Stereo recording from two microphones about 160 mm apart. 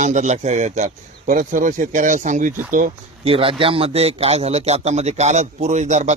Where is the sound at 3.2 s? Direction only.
35° right (ahead or behind).